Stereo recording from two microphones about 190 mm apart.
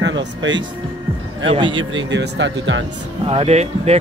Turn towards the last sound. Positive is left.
turn(degrees=-35)  # may be behind; listen again after turning